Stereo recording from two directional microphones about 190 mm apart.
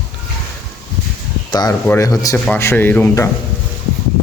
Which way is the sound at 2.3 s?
10° left (ahead or behind).